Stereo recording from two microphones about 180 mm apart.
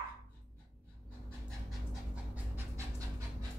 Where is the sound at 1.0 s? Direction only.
5° left (ahead or behind).